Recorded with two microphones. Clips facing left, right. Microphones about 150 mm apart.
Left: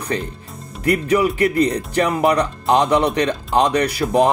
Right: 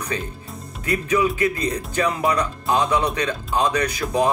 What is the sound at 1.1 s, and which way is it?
Speech, 70° left (ahead or behind).